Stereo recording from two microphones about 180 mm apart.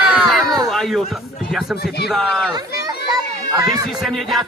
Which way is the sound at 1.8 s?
60° left (ahead or behind).